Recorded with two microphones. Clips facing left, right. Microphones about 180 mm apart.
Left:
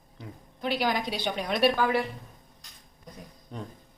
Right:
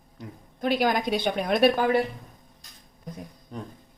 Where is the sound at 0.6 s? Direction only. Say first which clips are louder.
Right 4 dB; 50° right (ahead or behind).